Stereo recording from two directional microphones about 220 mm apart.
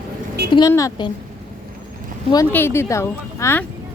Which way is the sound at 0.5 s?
15° left (ahead or behind).